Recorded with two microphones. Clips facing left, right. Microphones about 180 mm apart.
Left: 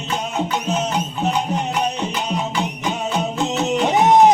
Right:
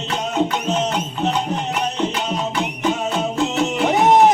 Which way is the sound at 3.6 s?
20° left (ahead or behind).